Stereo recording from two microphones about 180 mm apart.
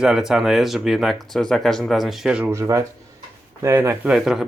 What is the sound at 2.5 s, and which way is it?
Speech, 15° right (ahead or behind).